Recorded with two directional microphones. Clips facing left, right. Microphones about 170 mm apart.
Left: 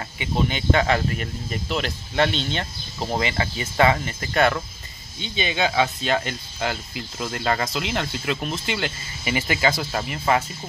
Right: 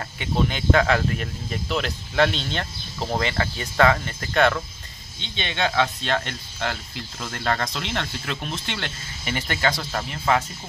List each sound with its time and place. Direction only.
0.2 s speech: centre (ahead or behind)